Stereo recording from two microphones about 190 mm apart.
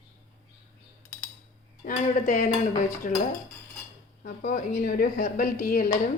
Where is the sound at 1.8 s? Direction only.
45° left (ahead or behind).